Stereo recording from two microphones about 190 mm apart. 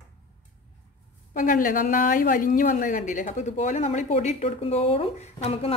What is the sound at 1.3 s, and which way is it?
A woman's voice, 45° left (ahead or behind).